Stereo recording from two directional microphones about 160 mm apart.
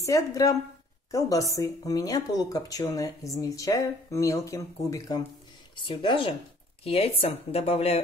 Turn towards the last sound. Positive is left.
turn(degrees=40)  # may be behind; listen again after turning